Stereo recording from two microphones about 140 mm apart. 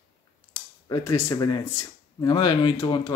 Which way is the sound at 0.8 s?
25° left (ahead or behind).